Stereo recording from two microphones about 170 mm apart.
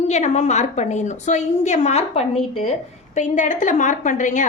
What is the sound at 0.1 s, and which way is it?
A woman's voice, 40° left (ahead or behind).